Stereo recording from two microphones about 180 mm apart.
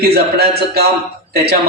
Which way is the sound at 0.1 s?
60° right (ahead or behind).